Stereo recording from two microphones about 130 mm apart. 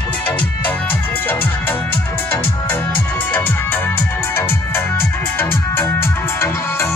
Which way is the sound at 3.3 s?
15° left (ahead or behind).